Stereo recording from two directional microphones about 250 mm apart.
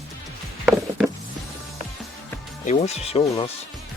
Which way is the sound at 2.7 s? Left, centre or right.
Left.